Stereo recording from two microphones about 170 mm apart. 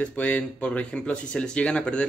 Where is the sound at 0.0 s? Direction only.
10° left (ahead or behind).